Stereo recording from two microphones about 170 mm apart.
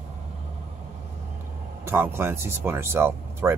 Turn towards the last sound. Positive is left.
turn(degrees=-15)  # may be behind; listen again after turning